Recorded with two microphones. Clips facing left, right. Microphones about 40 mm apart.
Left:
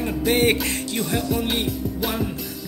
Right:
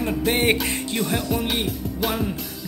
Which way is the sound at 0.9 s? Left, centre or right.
Centre.